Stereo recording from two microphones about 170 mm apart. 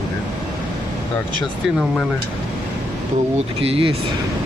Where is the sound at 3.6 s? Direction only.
35° right (ahead or behind).